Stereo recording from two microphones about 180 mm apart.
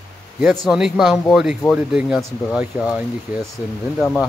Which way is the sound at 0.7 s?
5° right (ahead or behind).